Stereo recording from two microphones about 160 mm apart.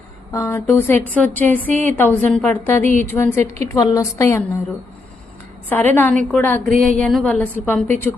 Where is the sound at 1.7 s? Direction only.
50° right (ahead or behind).